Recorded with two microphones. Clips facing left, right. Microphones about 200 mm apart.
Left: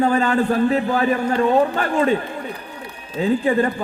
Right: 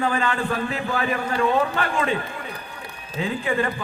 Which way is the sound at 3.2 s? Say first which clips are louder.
Left 6 dB; 40° left (ahead or behind).